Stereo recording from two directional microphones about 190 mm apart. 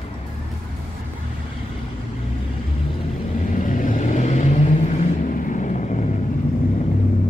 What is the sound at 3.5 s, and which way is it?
Vehicle, 40° left (ahead or behind).